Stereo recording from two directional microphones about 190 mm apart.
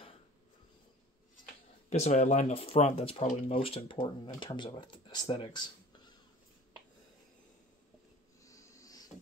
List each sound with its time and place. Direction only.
1.9 s speech: 35° left (ahead or behind)
8.5 s wheeze: 15° left (ahead or behind)